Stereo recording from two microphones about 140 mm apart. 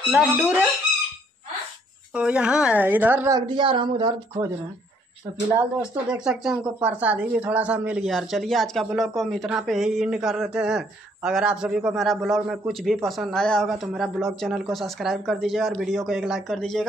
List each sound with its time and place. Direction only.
0.1 s speech: 10° right (ahead or behind)
2.1 s speech: 5° right (ahead or behind)
3.3 s speech: 35° right (ahead or behind)
6.0 s speech: 5° right (ahead or behind)